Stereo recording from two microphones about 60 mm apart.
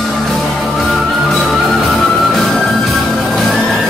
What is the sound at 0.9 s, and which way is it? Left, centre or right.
Music, centre.